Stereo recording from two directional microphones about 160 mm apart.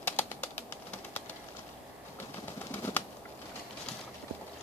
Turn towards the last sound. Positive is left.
turn(degrees=15)  # may be behind; listen again after turning